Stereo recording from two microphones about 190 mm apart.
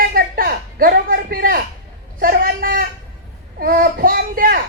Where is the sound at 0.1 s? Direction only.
50° right (ahead or behind).